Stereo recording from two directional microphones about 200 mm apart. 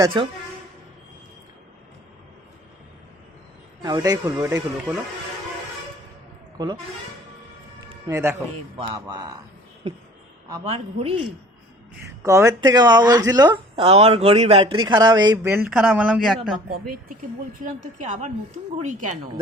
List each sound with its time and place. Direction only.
0.0 s speech: 25° right (ahead or behind)
3.8 s speech: 20° right (ahead or behind)
8.0 s speech: 15° right (ahead or behind)
8.7 s speech: 25° right (ahead or behind)
10.5 s speech: 30° right (ahead or behind)
12.2 s speech: 15° right (ahead or behind)
16.8 s a woman's voice: 45° right (ahead or behind)